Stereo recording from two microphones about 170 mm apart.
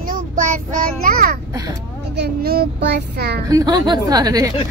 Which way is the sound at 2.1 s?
70° right (ahead or behind).